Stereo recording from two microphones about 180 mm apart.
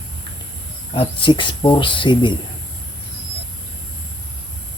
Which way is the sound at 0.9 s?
30° left (ahead or behind).